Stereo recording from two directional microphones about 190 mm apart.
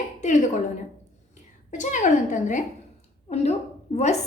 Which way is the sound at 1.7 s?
40° left (ahead or behind).